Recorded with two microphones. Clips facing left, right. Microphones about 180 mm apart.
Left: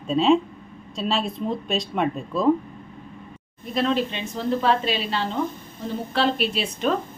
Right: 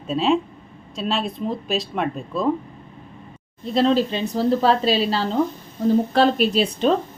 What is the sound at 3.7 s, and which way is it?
A woman's voice, 30° right (ahead or behind).